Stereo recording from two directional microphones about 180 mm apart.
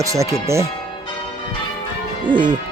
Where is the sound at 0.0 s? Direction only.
15° right (ahead or behind).